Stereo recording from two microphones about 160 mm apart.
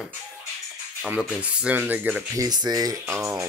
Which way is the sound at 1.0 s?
5° right (ahead or behind).